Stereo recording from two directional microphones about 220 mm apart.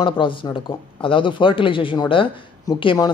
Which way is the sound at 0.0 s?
25° left (ahead or behind).